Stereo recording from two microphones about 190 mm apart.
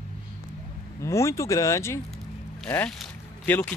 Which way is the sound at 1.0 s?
15° left (ahead or behind).